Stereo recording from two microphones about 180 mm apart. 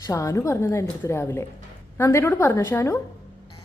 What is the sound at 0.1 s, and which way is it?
A woman's voice, 20° left (ahead or behind).